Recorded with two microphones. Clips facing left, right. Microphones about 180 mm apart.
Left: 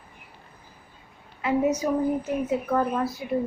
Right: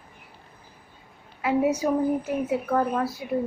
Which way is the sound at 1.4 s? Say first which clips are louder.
Right 1 dB; 10° right (ahead or behind).